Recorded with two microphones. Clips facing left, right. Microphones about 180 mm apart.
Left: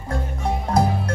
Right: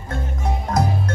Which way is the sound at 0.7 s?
30° left (ahead or behind).